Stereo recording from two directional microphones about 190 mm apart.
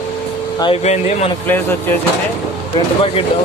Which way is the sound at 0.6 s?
30° left (ahead or behind).